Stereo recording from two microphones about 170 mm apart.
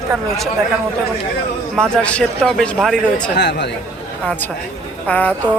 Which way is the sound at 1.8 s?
5° left (ahead or behind).